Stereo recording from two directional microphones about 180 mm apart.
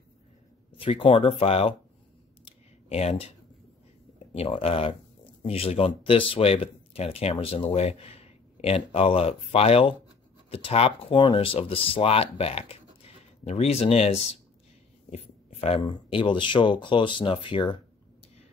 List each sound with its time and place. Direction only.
0.7 s speech: 30° left (ahead or behind)
2.9 s speech: 35° left (ahead or behind)
15.0 s a sound: 35° left (ahead or behind)
15.8 s speech: 25° left (ahead or behind)